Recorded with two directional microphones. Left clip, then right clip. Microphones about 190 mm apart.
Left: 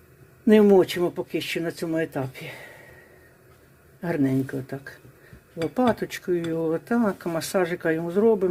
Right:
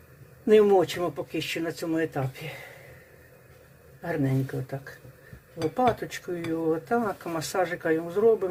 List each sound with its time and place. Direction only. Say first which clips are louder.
0.4 s speech: left 2 dB; 35° left (ahead or behind)
4.0 s speech: left 4 dB; 45° left (ahead or behind)